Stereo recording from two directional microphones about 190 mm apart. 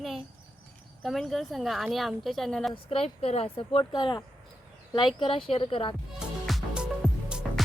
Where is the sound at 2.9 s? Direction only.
30° left (ahead or behind).